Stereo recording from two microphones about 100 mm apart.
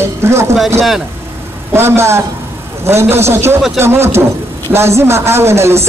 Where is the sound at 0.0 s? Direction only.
25° right (ahead or behind).